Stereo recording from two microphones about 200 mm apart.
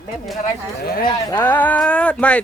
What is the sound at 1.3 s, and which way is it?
Speech, 10° left (ahead or behind).